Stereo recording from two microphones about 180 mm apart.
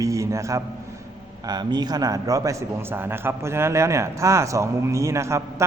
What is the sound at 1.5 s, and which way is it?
A man's voice, 25° right (ahead or behind).